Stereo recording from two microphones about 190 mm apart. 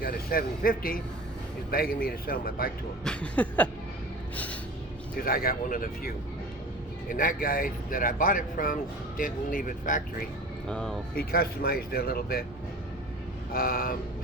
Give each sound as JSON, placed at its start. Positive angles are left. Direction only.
{"t": 0.0, "sound": "speech", "side_deg": 50}
{"t": 3.0, "sound": "a sound", "side_deg": 5}
{"t": 5.2, "sound": "speech", "side_deg": 50}
{"t": 7.1, "sound": "speech", "side_deg": 45}
{"t": 10.7, "sound": "speech", "side_deg": 5}
{"t": 11.1, "sound": "speech", "side_deg": 50}
{"t": 13.5, "sound": "speech", "side_deg": 50}